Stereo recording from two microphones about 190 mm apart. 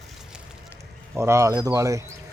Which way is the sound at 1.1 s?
15° right (ahead or behind).